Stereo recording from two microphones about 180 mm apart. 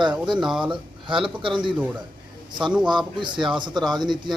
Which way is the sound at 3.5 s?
25° right (ahead or behind).